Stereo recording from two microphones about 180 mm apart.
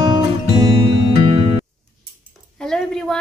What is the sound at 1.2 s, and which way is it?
Music, 25° right (ahead or behind).